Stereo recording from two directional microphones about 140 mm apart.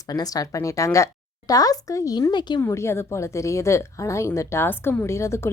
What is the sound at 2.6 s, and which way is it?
Speech, 20° left (ahead or behind).